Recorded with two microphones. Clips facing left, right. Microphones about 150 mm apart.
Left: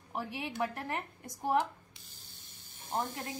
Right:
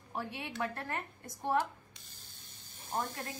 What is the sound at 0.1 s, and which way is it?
Speech, 15° left (ahead or behind).